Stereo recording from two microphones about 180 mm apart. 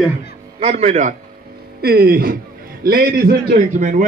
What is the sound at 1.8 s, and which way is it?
Speech, 60° right (ahead or behind).